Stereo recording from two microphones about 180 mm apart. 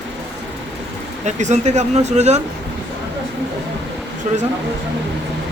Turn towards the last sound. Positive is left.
turn(degrees=-40)  # may be behind; listen again after turning